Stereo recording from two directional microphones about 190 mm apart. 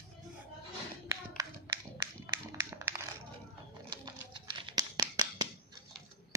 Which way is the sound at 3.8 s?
25° right (ahead or behind).